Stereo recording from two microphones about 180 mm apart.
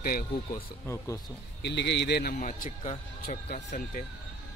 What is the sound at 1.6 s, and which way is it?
Speech, 70° left (ahead or behind).